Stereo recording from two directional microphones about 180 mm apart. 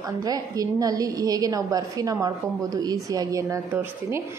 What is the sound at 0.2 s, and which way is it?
A woman's voice, 20° right (ahead or behind).